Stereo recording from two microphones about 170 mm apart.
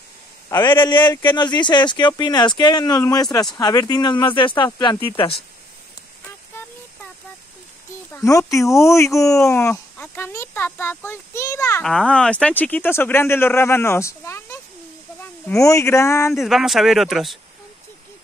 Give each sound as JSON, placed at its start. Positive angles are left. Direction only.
{"t": 0.5, "sound": "speech", "side_deg": 25}
{"t": 8.1, "sound": "speech", "side_deg": 20}
{"t": 11.8, "sound": "speech", "side_deg": 0}
{"t": 16.4, "sound": "speech", "side_deg": 0}